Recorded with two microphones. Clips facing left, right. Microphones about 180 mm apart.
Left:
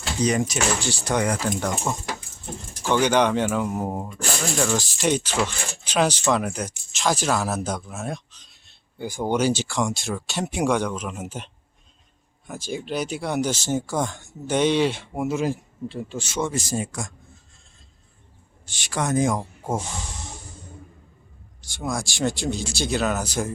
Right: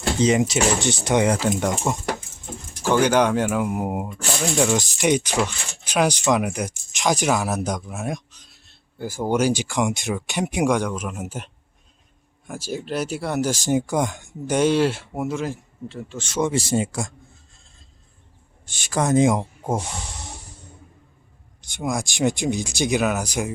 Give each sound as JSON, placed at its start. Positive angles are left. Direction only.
{"t": 0.2, "sound": "speech", "side_deg": -25}
{"t": 2.9, "sound": "speech", "side_deg": -5}
{"t": 15.3, "sound": "a man's voice", "side_deg": 10}
{"t": 16.4, "sound": "speech", "side_deg": -25}
{"t": 18.7, "sound": "speech", "side_deg": -40}
{"t": 19.1, "sound": "speech", "side_deg": -20}
{"t": 21.6, "sound": "speech", "side_deg": -20}